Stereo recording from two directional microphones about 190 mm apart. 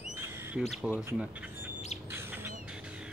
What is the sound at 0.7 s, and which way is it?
Speech, 5° right (ahead or behind).